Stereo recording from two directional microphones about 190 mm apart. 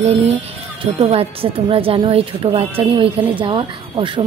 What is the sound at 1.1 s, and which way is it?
Speech, 30° right (ahead or behind).